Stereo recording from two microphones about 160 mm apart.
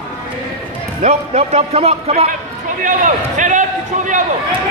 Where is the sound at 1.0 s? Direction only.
40° right (ahead or behind).